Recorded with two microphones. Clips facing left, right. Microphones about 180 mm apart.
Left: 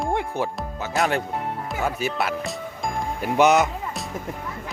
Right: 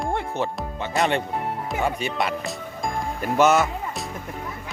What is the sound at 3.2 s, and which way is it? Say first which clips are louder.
Speech: left 1 dB; 15° left (ahead or behind).